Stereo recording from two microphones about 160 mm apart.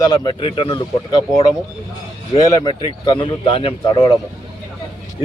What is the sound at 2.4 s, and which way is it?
A man's voice, 25° left (ahead or behind).